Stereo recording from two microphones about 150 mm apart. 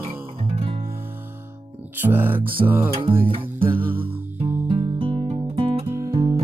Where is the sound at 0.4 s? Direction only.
40° right (ahead or behind).